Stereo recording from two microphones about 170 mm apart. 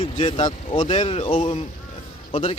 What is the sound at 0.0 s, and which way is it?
Speech, 35° left (ahead or behind).